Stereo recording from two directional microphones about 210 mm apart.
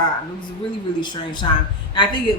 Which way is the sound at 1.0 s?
20° left (ahead or behind).